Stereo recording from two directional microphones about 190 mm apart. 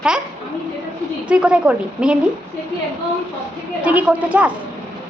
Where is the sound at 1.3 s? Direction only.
5° right (ahead or behind).